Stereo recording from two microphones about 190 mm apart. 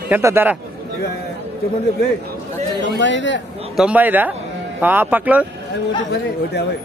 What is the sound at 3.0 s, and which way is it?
Speech, 75° left (ahead or behind).